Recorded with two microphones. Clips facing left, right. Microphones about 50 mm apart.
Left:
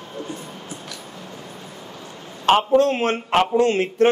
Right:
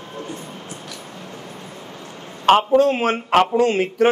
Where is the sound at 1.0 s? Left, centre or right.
Right.